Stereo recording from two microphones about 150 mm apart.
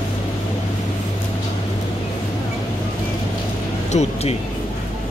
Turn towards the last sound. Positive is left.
turn(degrees=45)  # may be behind; listen again after turning